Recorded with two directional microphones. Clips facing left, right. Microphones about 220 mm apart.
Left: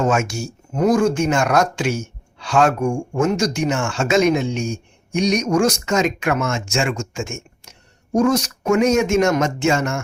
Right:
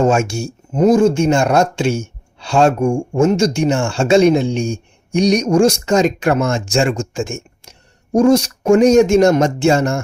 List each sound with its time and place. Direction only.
0.0 s speech: 30° right (ahead or behind)